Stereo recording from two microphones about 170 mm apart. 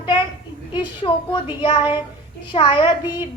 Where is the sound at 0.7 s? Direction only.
30° left (ahead or behind).